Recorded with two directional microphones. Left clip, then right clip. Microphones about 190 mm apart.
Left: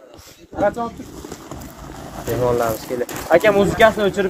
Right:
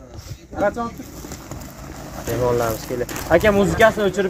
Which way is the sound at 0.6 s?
55° right (ahead or behind).